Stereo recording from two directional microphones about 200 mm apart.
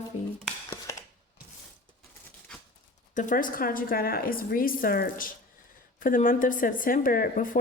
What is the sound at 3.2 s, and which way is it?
Speech, 40° left (ahead or behind).